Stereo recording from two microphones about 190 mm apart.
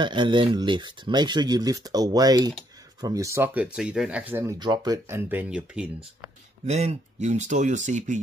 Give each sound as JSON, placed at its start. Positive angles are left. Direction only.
{"t": 0.0, "sound": "speech", "side_deg": -25}
{"t": 4.6, "sound": "speech", "side_deg": -20}
{"t": 6.6, "sound": "speech", "side_deg": -35}